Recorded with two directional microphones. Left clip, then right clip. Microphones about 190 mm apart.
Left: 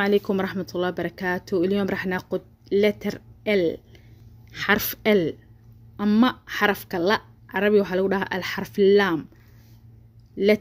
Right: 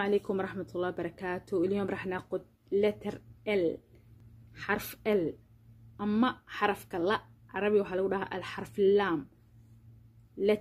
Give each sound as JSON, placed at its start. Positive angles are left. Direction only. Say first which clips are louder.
{"t": 0.0, "sound": "speech", "louder": "left 8 dB", "side_deg": 30}
{"t": 10.3, "sound": "speech", "louder": "left 8 dB", "side_deg": 30}